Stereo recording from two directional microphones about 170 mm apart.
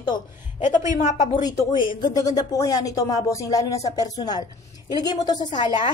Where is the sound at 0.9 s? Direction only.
45° left (ahead or behind).